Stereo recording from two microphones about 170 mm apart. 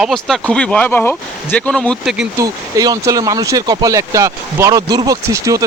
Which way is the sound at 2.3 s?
20° right (ahead or behind).